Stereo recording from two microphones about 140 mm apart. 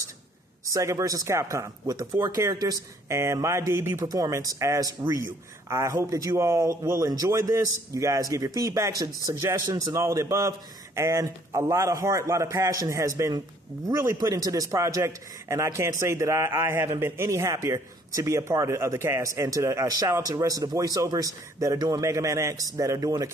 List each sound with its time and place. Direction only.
0.7 s speech: 25° right (ahead or behind)